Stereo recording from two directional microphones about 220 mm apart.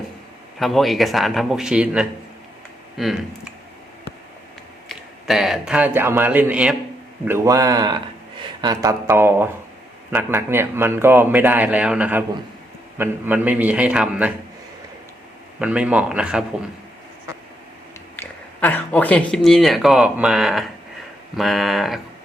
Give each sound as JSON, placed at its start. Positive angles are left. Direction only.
{"t": 0.6, "sound": "a man's voice", "side_deg": 0}
{"t": 4.9, "sound": "a man's voice", "side_deg": 0}
{"t": 15.5, "sound": "a man's voice", "side_deg": -5}
{"t": 18.2, "sound": "a man's voice", "side_deg": 10}